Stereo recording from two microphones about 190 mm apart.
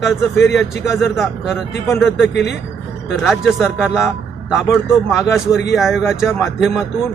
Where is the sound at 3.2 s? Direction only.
Centre (ahead or behind).